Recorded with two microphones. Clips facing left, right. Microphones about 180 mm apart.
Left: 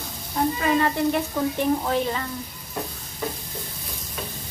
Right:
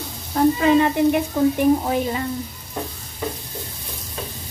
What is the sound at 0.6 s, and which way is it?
Speech, 20° right (ahead or behind).